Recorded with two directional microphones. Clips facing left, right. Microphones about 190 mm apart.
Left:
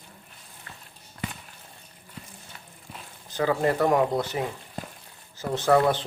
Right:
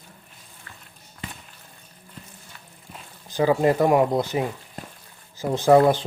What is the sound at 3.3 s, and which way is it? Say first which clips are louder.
Speech: right 4 dB; 15° right (ahead or behind).